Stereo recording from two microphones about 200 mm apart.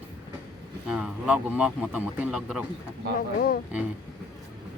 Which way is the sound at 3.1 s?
45° left (ahead or behind).